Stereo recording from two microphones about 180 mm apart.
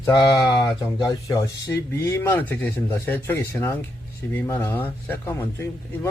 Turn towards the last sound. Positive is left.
turn(degrees=15)  # may be behind; listen again after turning